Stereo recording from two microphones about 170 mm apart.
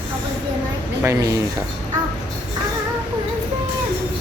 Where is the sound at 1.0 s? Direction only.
20° right (ahead or behind).